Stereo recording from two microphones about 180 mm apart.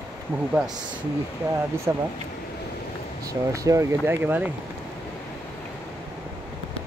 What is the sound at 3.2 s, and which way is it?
Speech, 20° right (ahead or behind).